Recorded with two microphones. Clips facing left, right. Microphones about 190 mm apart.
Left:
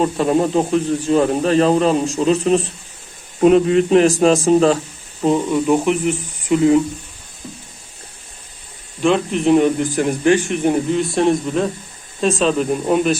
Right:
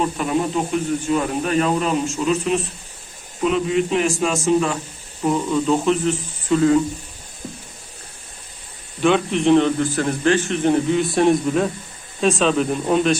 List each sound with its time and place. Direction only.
0.0 s speech: 35° left (ahead or behind)
3.4 s speech: 45° left (ahead or behind)
5.2 s a man's voice: 20° left (ahead or behind)
9.0 s a man's voice: centre (ahead or behind)
10.8 s speech: centre (ahead or behind)